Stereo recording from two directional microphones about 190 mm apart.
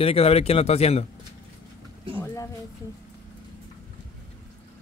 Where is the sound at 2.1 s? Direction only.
15° left (ahead or behind).